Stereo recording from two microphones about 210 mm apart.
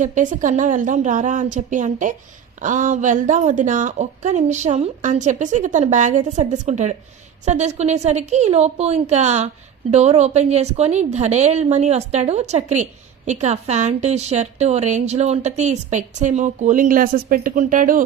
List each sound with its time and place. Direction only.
0.0 s a woman's voice: 35° right (ahead or behind)